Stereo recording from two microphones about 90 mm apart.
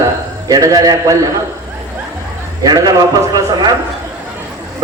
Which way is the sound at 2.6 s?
50° right (ahead or behind).